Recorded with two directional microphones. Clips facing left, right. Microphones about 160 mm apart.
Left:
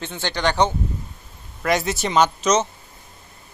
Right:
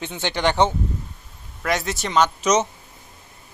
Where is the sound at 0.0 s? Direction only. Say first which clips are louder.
Right 1 dB; 20° right (ahead or behind).